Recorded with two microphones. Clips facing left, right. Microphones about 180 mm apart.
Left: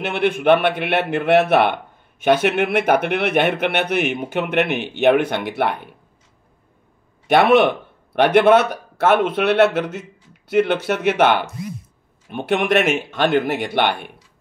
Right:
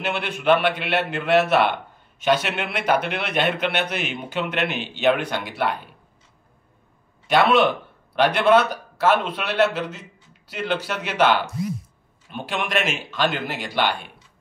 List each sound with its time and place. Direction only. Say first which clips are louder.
0.0 s a man's voice: left 6 dB; 55° left (ahead or behind)
7.2 s a man's voice: left 4 dB; 60° left (ahead or behind)